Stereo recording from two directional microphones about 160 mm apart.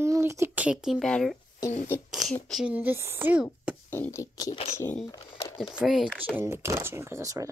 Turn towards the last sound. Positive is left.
turn(degrees=-20)  # may be behind; listen again after turning